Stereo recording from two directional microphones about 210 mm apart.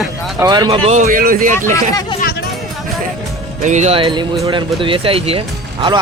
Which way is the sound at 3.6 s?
35° right (ahead or behind).